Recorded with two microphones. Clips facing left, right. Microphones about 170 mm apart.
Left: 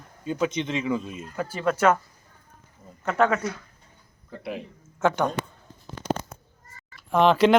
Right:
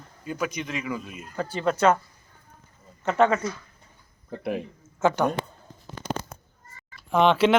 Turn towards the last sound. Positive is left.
turn(degrees=0)  # may be behind; listen again after turning